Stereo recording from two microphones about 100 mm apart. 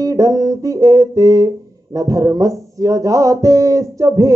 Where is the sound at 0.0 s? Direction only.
35° right (ahead or behind).